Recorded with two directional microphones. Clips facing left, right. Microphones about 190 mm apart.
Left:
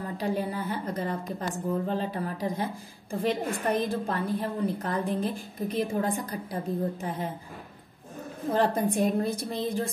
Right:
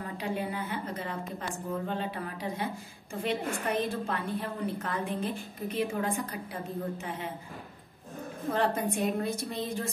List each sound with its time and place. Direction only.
0.2 s a woman's voice: 40° left (ahead or behind)
8.5 s a woman's voice: 35° left (ahead or behind)